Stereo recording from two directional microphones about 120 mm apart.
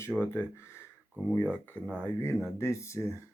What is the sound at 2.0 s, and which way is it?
Speech, 20° left (ahead or behind).